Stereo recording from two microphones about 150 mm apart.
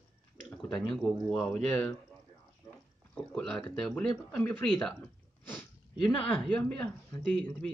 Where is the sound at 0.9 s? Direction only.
5° left (ahead or behind).